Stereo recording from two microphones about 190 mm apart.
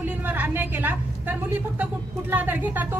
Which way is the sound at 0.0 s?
10° right (ahead or behind).